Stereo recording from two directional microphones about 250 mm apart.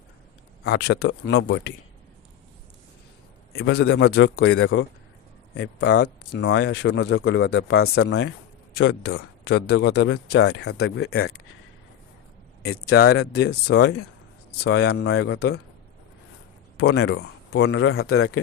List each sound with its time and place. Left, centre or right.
0.6 s speech: left
3.5 s speech: left
11.0 s speech: left
13.1 s speech: left
16.7 s speech: left